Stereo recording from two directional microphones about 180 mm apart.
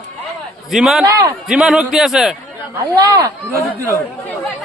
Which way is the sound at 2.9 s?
20° right (ahead or behind).